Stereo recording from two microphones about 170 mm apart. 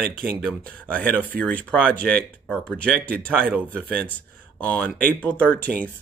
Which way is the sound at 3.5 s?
10° right (ahead or behind).